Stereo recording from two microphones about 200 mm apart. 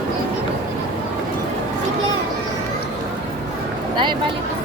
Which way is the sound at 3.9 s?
25° right (ahead or behind).